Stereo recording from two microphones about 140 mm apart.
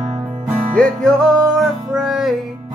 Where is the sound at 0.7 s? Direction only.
5° left (ahead or behind).